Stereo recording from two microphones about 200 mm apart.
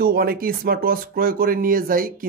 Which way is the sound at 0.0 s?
50° right (ahead or behind).